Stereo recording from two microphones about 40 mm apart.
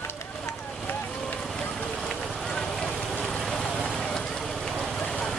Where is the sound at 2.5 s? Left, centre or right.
Centre.